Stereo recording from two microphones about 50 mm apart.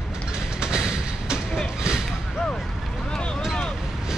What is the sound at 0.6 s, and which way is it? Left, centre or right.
Train, centre.